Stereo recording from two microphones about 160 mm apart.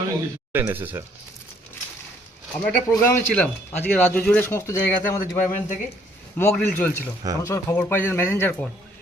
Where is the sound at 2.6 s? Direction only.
10° left (ahead or behind).